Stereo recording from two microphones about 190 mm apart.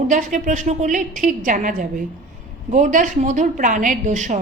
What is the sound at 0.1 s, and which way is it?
A woman's voice, 45° right (ahead or behind).